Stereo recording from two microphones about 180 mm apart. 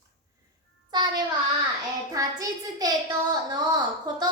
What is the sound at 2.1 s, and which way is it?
A child's voice, 20° right (ahead or behind).